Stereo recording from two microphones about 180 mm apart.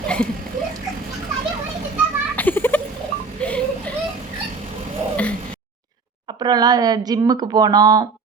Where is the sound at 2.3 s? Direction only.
10° left (ahead or behind).